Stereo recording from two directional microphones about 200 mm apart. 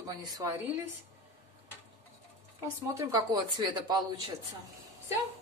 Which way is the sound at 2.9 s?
15° right (ahead or behind).